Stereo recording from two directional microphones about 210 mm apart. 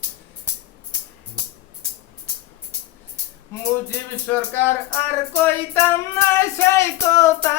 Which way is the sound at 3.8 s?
10° left (ahead or behind).